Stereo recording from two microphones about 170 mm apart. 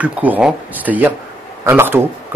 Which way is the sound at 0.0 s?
10° right (ahead or behind).